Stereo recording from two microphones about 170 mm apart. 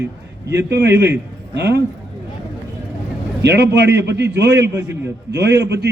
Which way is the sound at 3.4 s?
85° right.